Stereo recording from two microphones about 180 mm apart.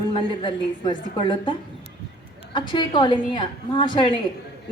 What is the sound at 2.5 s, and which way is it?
A woman's voice, 25° left (ahead or behind).